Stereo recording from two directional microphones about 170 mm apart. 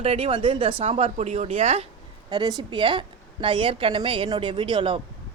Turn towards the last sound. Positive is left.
turn(degrees=-30)  # may be behind; listen again after turning